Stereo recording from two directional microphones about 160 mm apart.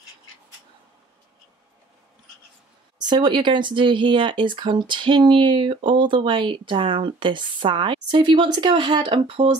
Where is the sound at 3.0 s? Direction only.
30° right (ahead or behind).